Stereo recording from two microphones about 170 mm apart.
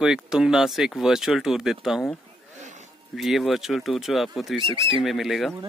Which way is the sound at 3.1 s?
Centre (ahead or behind).